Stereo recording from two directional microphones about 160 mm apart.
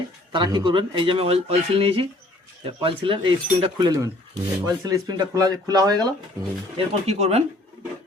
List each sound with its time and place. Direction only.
0.3 s speech: 30° right (ahead or behind)
6.7 s speech: 40° right (ahead or behind)